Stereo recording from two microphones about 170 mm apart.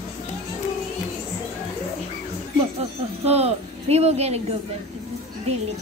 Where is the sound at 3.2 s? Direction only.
35° right (ahead or behind).